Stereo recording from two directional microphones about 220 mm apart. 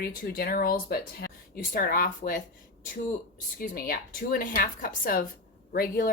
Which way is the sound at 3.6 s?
40° left (ahead or behind).